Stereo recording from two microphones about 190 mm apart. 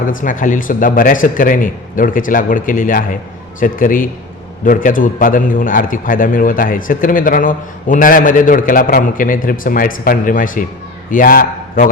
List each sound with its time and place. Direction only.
0.1 s a man's voice: 45° left (ahead or behind)